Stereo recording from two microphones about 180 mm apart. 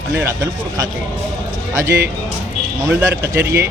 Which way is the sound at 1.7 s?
15° right (ahead or behind).